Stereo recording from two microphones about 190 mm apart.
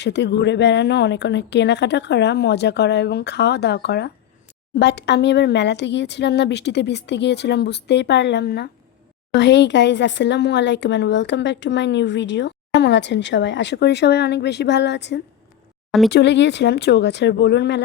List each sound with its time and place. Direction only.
0.0 s speech: 65° left (ahead or behind)